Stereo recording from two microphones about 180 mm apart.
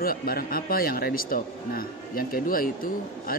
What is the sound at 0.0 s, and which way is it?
A man's voice, 55° left (ahead or behind).